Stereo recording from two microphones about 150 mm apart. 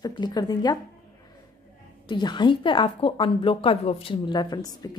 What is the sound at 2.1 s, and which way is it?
A woman's voice, 30° left (ahead or behind).